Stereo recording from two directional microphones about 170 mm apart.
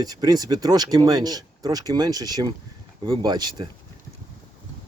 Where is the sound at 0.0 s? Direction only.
20° right (ahead or behind).